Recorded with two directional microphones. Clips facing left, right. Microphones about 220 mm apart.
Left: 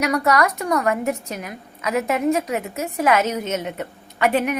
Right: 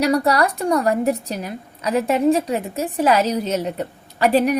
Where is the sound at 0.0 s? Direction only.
30° right (ahead or behind).